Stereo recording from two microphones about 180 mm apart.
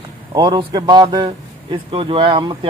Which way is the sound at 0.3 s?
25° right (ahead or behind).